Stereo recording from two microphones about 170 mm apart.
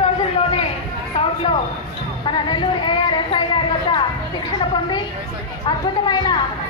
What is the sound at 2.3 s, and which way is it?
A woman's voice, 25° left (ahead or behind).